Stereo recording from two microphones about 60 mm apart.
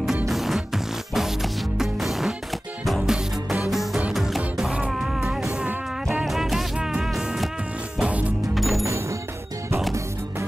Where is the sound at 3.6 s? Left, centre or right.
Centre.